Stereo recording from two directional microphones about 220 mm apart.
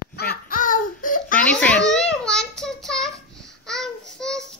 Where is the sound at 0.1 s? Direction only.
45° left (ahead or behind).